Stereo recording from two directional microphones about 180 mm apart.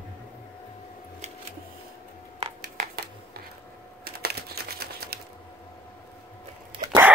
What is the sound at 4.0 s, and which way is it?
Typing, 60° right (ahead or behind).